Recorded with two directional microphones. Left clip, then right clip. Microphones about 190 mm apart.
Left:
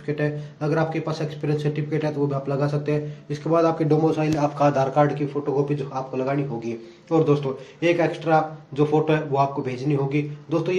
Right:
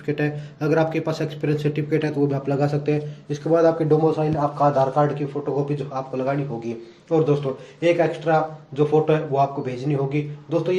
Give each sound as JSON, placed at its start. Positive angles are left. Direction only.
{"t": 0.0, "sound": "speech", "side_deg": -15}
{"t": 3.4, "sound": "a man's voice", "side_deg": 10}